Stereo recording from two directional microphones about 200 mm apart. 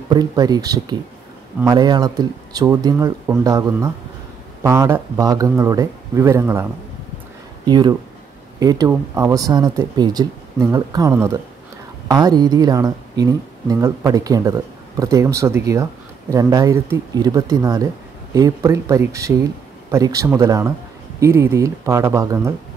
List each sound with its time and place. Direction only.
0.1 s speech: 20° right (ahead or behind)